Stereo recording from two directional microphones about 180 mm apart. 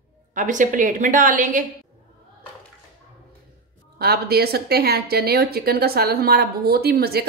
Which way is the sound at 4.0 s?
60° right (ahead or behind).